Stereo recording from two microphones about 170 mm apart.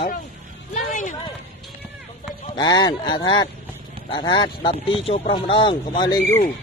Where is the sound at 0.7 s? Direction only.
50° left (ahead or behind).